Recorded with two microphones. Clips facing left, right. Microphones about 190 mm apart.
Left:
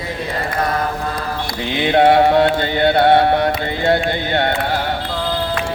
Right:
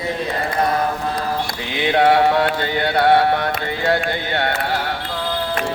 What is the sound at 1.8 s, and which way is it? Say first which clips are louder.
Mantra: left 2 dB; 25° left (ahead or behind).